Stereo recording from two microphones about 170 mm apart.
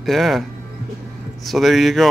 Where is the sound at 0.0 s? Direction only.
Centre (ahead or behind).